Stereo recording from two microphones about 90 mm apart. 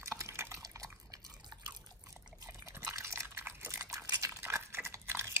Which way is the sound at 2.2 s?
40° right (ahead or behind).